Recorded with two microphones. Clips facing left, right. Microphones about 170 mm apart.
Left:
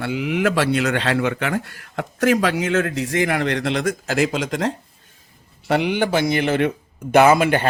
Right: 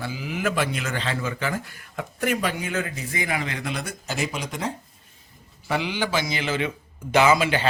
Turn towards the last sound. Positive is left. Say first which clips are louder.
# left 5 dB
turn(degrees=55)  # may be behind; listen again after turning